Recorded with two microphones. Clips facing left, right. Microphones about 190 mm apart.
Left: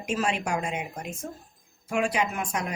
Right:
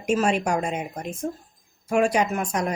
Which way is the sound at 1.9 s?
45° right (ahead or behind).